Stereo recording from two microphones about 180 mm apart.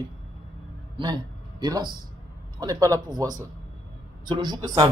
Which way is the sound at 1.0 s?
20° right (ahead or behind).